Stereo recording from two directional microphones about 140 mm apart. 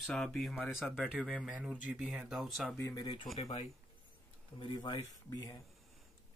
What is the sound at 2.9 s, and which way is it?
Speech, 30° left (ahead or behind).